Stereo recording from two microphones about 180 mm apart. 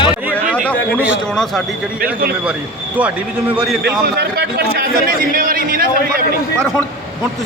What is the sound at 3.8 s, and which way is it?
Speech, 65° right (ahead or behind).